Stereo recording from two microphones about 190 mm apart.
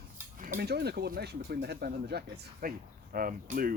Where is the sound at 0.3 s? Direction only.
45° right (ahead or behind).